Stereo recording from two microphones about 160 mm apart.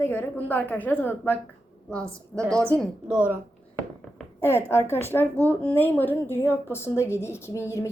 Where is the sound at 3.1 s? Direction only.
10° right (ahead or behind).